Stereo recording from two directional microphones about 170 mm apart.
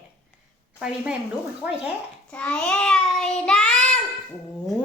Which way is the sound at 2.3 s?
5° left (ahead or behind).